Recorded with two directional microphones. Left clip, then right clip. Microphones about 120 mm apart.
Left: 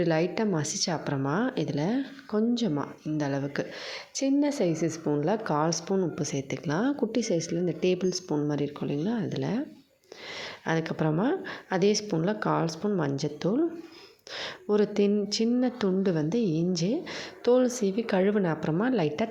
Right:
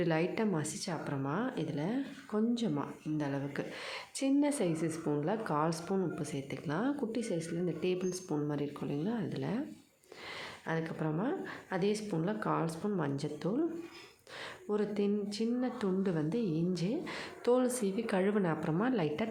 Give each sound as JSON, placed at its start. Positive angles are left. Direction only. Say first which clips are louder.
{"t": 0.0, "sound": "a woman's voice", "louder": "left 6 dB", "side_deg": 30}
{"t": 0.5, "sound": "a woman's voice", "louder": "left 8 dB", "side_deg": 50}
{"t": 2.6, "sound": "a woman's voice", "louder": "left 6 dB", "side_deg": 35}
{"t": 6.1, "sound": "a woman's voice", "louder": "left 8 dB", "side_deg": 45}
{"t": 10.7, "sound": "a woman's voice", "louder": "left 8 dB", "side_deg": 65}
{"t": 14.3, "sound": "speech", "louder": "left 9 dB", "side_deg": 55}
{"t": 16.0, "sound": "a woman's voice", "louder": "left 7 dB", "side_deg": 40}